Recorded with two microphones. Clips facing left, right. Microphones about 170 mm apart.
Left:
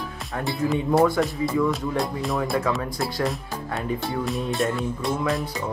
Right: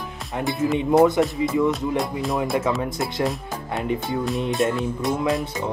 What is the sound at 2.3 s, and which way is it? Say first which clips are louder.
Speech: right 2 dB; 20° right (ahead or behind).